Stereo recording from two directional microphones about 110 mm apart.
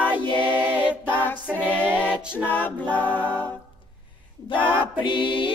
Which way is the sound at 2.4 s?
15° left (ahead or behind).